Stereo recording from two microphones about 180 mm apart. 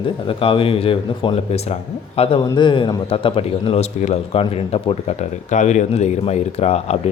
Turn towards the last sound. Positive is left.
turn(degrees=35)  # may be behind; listen again after turning